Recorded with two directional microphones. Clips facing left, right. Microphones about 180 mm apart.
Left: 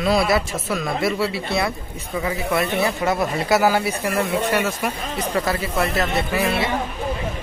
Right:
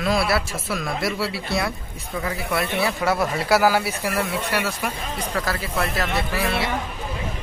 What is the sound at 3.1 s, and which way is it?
Speech, 15° left (ahead or behind).